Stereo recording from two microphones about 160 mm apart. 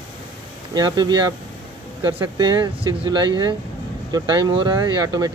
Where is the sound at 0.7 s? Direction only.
25° right (ahead or behind).